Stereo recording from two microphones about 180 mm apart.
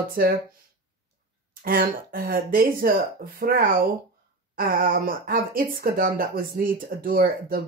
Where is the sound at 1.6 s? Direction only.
55° right (ahead or behind).